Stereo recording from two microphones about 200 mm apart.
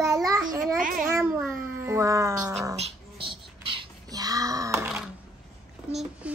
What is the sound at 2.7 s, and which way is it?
Grunt, 30° right (ahead or behind).